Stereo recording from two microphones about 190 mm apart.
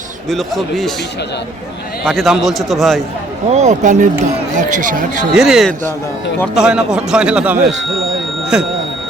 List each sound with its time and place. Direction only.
0.3 s speech: centre (ahead or behind)
2.0 s speech: centre (ahead or behind)
3.5 s speech: 35° right (ahead or behind)
5.3 s speech: centre (ahead or behind)